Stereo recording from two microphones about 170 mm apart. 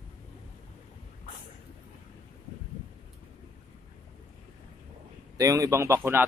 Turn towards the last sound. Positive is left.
turn(degrees=-15)  # may be behind; listen again after turning